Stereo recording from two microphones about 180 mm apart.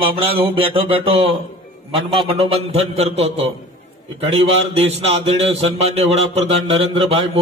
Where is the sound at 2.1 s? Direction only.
30° right (ahead or behind).